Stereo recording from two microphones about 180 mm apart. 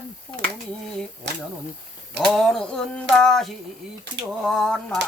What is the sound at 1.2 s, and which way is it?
Speech, 75° right (ahead or behind).